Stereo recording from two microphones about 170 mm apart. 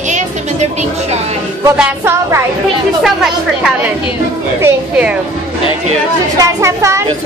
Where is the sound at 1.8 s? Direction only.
15° right (ahead or behind).